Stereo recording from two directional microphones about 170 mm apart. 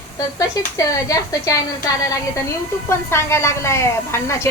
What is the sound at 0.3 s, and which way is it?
A woman's voice, 20° left (ahead or behind).